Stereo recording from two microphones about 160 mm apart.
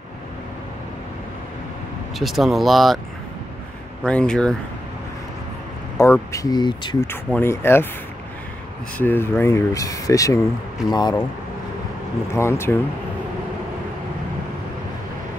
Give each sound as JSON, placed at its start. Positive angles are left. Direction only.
{"t": 2.1, "sound": "speech", "side_deg": 0}
{"t": 4.0, "sound": "speech", "side_deg": 5}
{"t": 5.9, "sound": "speech", "side_deg": 15}
{"t": 7.1, "sound": "speech", "side_deg": 10}
{"t": 8.9, "sound": "speech", "side_deg": 10}
{"t": 12.4, "sound": "speech", "side_deg": 15}